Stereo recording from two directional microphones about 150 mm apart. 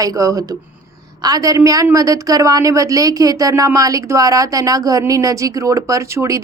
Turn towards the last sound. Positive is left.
turn(degrees=-20)  # may be behind; listen again after turning